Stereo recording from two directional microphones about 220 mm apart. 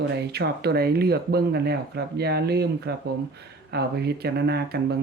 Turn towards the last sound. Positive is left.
turn(degrees=-45)  # may be behind; listen again after turning